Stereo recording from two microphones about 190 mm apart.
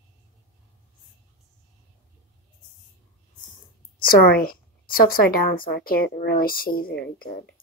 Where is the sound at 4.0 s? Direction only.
50° left (ahead or behind).